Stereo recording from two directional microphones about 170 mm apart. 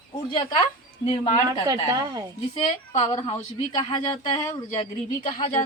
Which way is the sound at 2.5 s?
40° left (ahead or behind).